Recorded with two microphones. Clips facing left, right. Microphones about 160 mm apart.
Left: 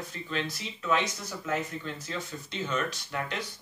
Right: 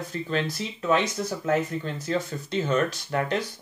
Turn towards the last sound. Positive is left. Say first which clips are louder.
# right 7 dB
turn(degrees=-45)  # may be behind; listen again after turning